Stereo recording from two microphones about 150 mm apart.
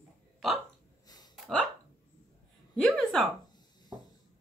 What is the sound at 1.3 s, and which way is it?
Hiccup, 5° left (ahead or behind).